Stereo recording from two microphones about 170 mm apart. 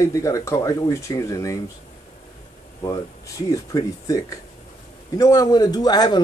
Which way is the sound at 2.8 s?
20° left (ahead or behind).